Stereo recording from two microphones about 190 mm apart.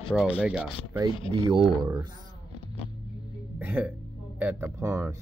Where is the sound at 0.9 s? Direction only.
20° right (ahead or behind).